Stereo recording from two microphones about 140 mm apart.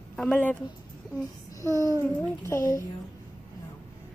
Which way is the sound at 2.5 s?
20° left (ahead or behind).